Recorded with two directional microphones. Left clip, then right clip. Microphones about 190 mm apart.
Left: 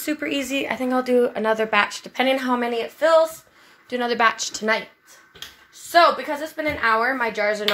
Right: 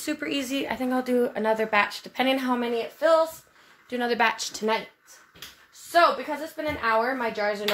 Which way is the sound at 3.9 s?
5° left (ahead or behind).